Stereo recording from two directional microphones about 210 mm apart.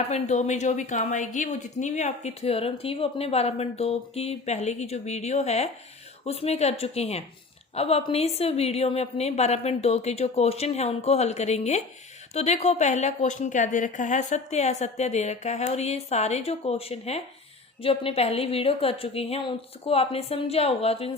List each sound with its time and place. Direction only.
0.1 s a woman's voice: 35° left (ahead or behind)